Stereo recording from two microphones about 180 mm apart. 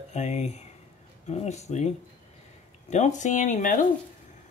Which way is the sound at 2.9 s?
40° left (ahead or behind).